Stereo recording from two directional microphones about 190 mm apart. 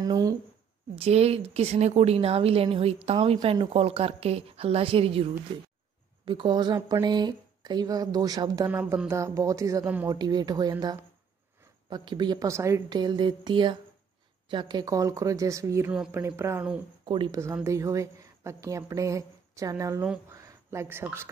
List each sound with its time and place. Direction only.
0.0 s speech: 20° right (ahead or behind)
0.9 s a woman's voice: 35° right (ahead or behind); by 15.9 s 15° right (ahead or behind)
15.9 s speech: 5° right (ahead or behind)
16.2 s a woman's voice: 15° right (ahead or behind)
17.0 s a woman's voice: 25° right (ahead or behind)